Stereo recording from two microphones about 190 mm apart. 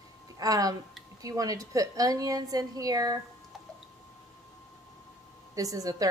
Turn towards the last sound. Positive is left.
turn(degrees=-20)  # may be behind; listen again after turning